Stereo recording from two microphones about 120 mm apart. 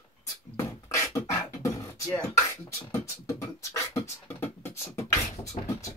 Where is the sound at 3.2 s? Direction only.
25° left (ahead or behind).